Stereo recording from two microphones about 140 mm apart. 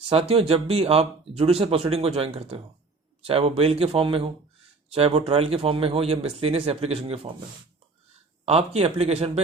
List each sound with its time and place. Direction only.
0.1 s speech: 45° right (ahead or behind)
8.4 s speech: 50° right (ahead or behind)